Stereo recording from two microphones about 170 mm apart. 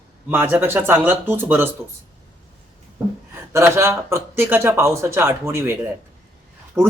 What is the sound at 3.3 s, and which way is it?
Speech, 15° right (ahead or behind).